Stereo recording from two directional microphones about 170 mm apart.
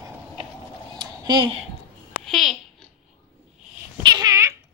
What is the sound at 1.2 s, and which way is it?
Speech, 25° right (ahead or behind).